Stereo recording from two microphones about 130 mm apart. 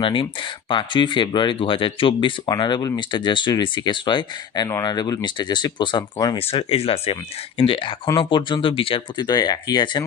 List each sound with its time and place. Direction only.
0.0 s speech: 40° left (ahead or behind)
6.3 s speech: 45° left (ahead or behind)